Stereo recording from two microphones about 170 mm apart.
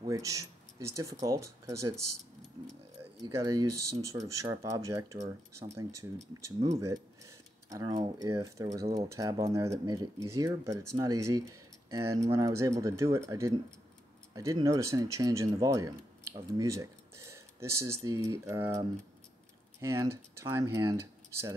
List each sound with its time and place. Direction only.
0.0 s speech: 20° right (ahead or behind)
3.2 s speech: 20° right (ahead or behind)